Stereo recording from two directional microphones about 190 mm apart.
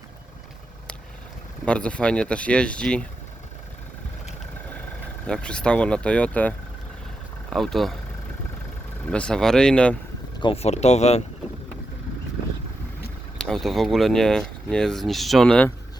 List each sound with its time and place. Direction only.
1.6 s speech: 5° left (ahead or behind)
5.2 s speech: 5° left (ahead or behind)
7.5 s speech: centre (ahead or behind)
9.0 s speech: 5° left (ahead or behind)
10.4 s speech: 30° left (ahead or behind)
13.4 s speech: centre (ahead or behind)